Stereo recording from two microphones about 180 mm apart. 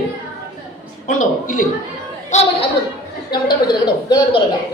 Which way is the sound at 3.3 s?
25° left (ahead or behind).